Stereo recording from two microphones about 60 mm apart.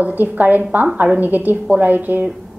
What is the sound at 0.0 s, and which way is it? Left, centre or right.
A woman's voice, right.